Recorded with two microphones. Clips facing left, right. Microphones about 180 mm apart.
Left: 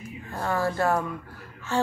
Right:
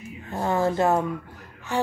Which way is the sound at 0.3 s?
20° right (ahead or behind).